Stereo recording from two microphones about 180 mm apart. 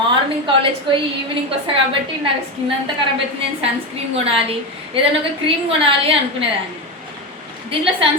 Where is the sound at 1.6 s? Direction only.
30° right (ahead or behind).